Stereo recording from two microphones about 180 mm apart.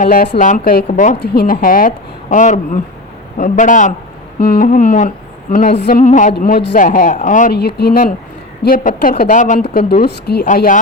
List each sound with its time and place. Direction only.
0.0 s a woman's voice: 50° left (ahead or behind)
1.2 s a woman's voice: 60° left (ahead or behind); by 7.5 s 45° left (ahead or behind)
7.5 s a woman's voice: 60° left (ahead or behind)
10.4 s a woman's voice: 45° left (ahead or behind)